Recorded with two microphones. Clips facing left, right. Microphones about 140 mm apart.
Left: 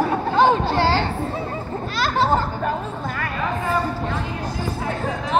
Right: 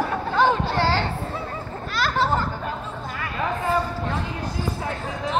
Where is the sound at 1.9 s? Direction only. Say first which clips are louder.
Left 3 dB; 25° left (ahead or behind).